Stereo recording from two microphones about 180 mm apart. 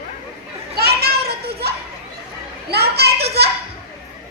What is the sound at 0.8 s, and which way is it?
Children playing, 60° right (ahead or behind).